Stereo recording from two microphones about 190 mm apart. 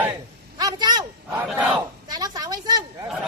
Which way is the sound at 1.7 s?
20° right (ahead or behind).